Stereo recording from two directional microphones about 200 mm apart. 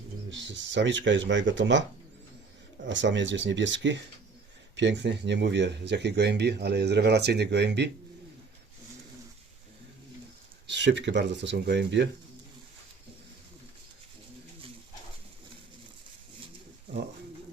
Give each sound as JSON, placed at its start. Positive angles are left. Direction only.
{"t": 0.3, "sound": "speech", "side_deg": -65}
{"t": 2.8, "sound": "speech", "side_deg": -65}
{"t": 10.7, "sound": "speech", "side_deg": -60}